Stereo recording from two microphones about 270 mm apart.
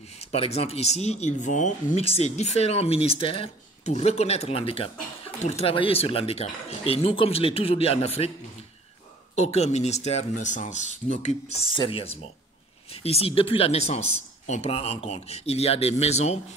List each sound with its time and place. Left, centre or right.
0.2 s speech: left
9.3 s speech: left